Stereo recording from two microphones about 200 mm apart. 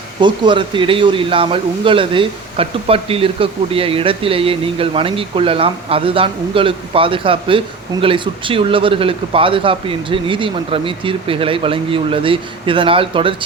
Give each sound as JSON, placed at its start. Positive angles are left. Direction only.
{"t": 0.2, "sound": "speech", "side_deg": -25}